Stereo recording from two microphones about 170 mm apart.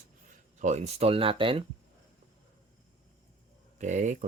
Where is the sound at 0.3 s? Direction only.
45° right (ahead or behind).